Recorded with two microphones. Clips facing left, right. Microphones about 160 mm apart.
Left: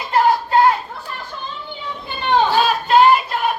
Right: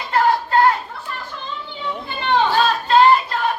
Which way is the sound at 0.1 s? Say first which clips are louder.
Left 2 dB; 15° left (ahead or behind).